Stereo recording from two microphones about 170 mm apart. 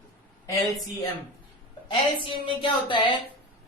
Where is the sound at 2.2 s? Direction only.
30° left (ahead or behind).